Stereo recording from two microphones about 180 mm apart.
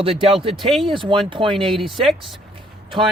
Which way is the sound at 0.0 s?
30° right (ahead or behind).